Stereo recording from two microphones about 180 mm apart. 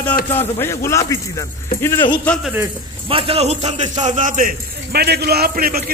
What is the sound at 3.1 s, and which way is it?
Speech, 30° right (ahead or behind).